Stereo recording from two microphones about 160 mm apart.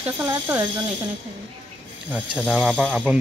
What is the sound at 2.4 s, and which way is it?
Speech, centre (ahead or behind).